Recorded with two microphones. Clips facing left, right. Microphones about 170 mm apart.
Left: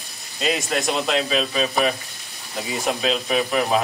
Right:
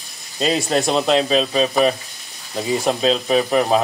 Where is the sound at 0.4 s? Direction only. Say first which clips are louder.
Right 5 dB; 30° right (ahead or behind).